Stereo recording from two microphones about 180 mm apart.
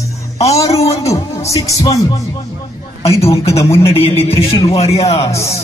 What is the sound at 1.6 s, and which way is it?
Speech, 15° left (ahead or behind).